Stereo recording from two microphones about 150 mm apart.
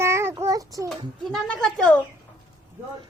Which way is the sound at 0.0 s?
15° right (ahead or behind).